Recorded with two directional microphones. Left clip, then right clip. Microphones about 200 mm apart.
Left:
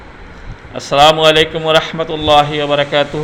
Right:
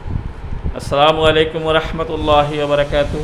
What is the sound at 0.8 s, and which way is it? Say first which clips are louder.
A man's voice: left 4 dB; centre (ahead or behind).